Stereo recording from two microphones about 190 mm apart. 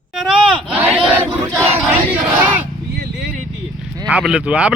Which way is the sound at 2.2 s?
10° right (ahead or behind).